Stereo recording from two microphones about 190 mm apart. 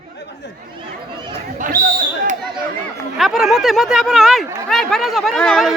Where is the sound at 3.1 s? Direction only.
Centre (ahead or behind).